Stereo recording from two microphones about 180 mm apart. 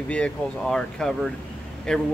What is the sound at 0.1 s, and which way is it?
Speech, 5° left (ahead or behind).